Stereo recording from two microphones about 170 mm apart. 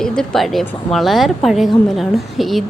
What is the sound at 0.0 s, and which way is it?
A woman's voice, centre (ahead or behind).